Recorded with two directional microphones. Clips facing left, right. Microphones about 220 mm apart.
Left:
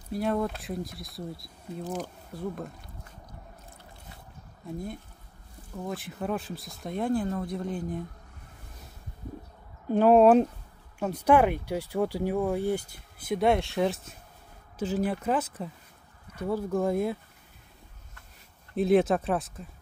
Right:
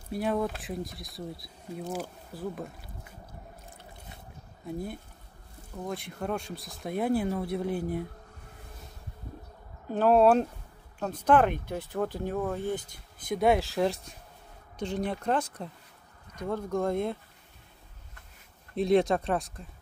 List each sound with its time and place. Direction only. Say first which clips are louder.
0.1 s speech: left 1 dB; centre (ahead or behind)
5.9 s speech: left 1 dB; centre (ahead or behind)
9.9 s speech: left 3 dB; 10° left (ahead or behind)
18.8 s speech: left 1 dB; 5° left (ahead or behind)